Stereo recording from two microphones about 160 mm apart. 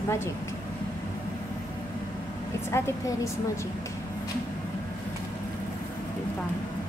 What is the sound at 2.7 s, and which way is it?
Speech, 15° left (ahead or behind).